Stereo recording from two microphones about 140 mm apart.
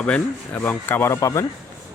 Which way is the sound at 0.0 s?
10° left (ahead or behind).